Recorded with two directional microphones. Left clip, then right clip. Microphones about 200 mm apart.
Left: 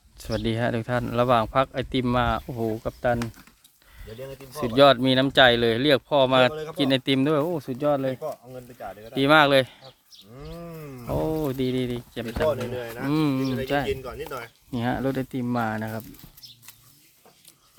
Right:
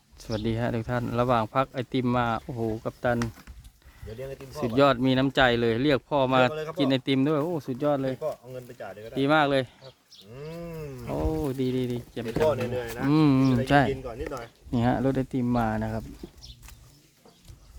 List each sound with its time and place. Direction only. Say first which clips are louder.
0.2 s speech: left 3 dB; 15° left (ahead or behind)
4.2 s speech: left 1 dB; 5° left (ahead or behind)
6.5 s speech: even; 5° right (ahead or behind)
6.7 s speech: left 2 dB; 15° left (ahead or behind)
8.2 s speech: right 1 dB; 15° right (ahead or behind)
9.1 s speech: left 5 dB; 30° left (ahead or behind)
10.3 s speech: right 2 dB; 15° right (ahead or behind)
11.1 s speech: left 3 dB; 25° left (ahead or behind)
12.5 s speech: even; centre (ahead or behind)
13.1 s speech: right 2 dB; 15° right (ahead or behind)
13.7 s speech: right 4 dB; 25° right (ahead or behind)
13.9 s speech: left 2 dB; 45° left (ahead or behind)
14.7 s speech: right 1 dB; 10° right (ahead or behind)